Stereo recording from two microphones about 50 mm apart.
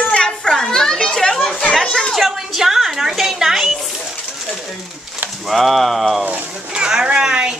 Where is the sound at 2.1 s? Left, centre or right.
Centre.